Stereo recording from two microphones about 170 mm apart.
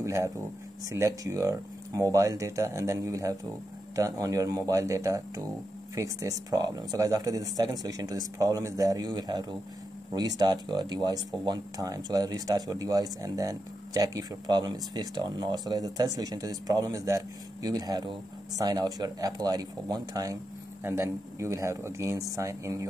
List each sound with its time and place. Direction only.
0.0 s speech: 15° right (ahead or behind)